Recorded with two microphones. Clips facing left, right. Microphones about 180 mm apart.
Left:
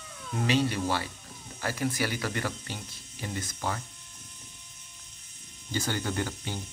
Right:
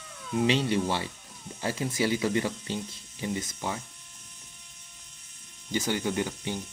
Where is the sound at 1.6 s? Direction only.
25° right (ahead or behind).